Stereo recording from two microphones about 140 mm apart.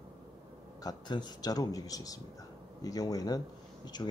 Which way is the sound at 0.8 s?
30° left (ahead or behind).